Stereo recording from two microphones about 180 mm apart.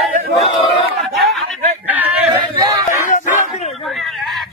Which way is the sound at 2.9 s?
45° left (ahead or behind).